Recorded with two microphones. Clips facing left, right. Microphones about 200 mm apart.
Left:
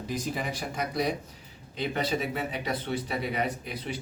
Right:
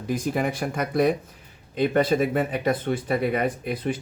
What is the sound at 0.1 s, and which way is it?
Speech, 55° right (ahead or behind).